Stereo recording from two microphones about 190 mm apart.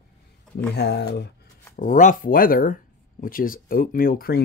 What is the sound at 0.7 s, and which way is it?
Speech, 60° left (ahead or behind).